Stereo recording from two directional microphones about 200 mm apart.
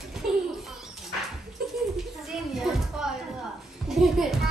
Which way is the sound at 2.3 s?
Centre (ahead or behind).